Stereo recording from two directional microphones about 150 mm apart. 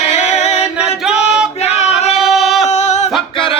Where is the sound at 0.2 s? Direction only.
50° left (ahead or behind).